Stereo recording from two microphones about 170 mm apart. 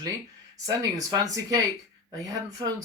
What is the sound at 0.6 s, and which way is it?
Speech, 20° right (ahead or behind).